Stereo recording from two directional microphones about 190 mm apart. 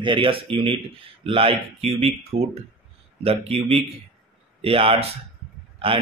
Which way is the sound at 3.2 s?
30° right (ahead or behind).